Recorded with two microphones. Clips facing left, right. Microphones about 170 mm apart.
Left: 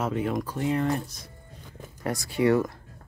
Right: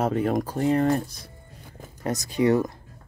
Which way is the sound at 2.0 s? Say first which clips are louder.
Right 2 dB; 20° right (ahead or behind).